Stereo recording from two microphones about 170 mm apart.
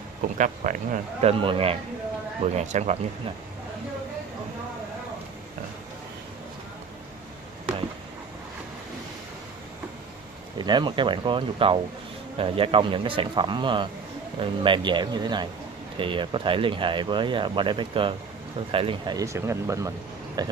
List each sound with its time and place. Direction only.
0.4 s speech: 50° right (ahead or behind)
1.4 s speech: 30° right (ahead or behind)
2.4 s speech: 40° right (ahead or behind)
10.6 s speech: 25° right (ahead or behind)